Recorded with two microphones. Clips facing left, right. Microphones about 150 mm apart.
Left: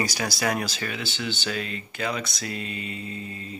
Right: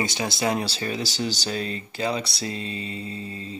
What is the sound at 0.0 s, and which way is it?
Speech, 25° right (ahead or behind).